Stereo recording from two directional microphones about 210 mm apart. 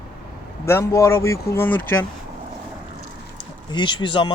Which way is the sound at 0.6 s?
10° left (ahead or behind).